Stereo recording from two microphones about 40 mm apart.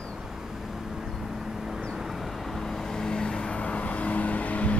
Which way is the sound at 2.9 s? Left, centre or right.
Centre.